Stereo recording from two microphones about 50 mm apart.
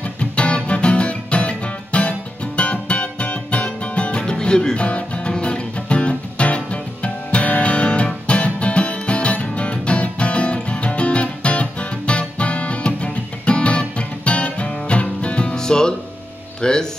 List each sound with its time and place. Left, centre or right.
0.0 s music: left